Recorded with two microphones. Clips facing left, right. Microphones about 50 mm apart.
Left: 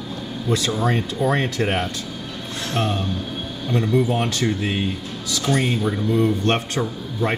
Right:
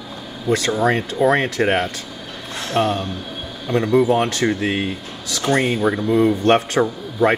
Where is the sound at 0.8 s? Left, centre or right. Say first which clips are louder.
Right 7 dB; right.